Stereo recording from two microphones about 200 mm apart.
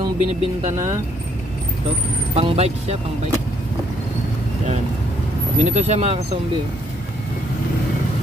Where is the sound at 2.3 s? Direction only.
30° right (ahead or behind).